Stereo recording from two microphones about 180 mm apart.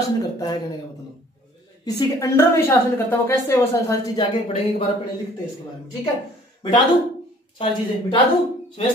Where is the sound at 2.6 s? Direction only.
15° left (ahead or behind).